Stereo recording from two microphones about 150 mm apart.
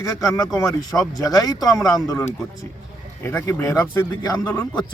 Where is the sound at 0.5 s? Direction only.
20° left (ahead or behind).